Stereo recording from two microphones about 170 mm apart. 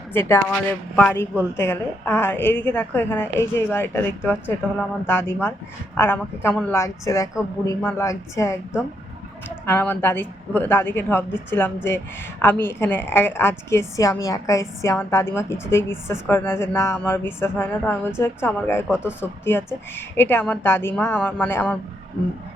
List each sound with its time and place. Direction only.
0.1 s a woman's voice: 15° left (ahead or behind)
9.6 s a woman's voice: 10° left (ahead or behind)